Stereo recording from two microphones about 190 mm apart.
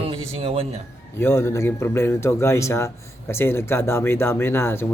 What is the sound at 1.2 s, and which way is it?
Speech, 15° left (ahead or behind).